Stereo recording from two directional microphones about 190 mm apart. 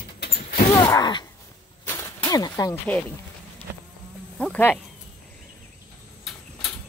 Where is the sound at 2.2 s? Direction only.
20° left (ahead or behind).